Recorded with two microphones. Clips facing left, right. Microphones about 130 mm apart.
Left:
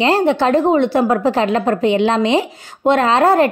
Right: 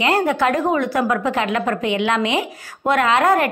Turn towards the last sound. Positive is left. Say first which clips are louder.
# left 4 dB
turn(degrees=30)  # may be behind; listen again after turning